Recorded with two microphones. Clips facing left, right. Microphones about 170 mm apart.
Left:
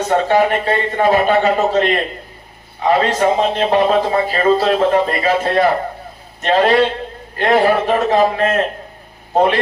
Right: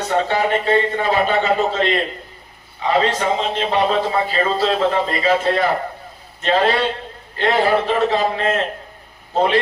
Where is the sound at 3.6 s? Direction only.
45° left (ahead or behind).